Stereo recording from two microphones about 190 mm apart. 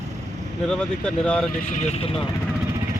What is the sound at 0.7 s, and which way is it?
Speech, 5° left (ahead or behind).